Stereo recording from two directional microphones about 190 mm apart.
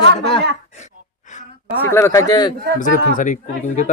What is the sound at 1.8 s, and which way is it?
Speech, 15° left (ahead or behind).